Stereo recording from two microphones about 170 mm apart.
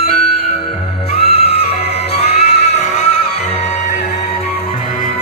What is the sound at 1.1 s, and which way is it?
Music, 35° left (ahead or behind).